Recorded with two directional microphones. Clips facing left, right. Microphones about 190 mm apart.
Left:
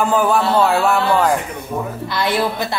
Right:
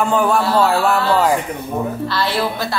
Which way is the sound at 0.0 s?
Centre (ahead or behind).